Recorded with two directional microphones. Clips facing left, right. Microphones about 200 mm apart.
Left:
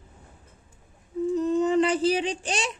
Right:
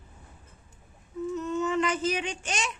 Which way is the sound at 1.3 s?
35° left (ahead or behind).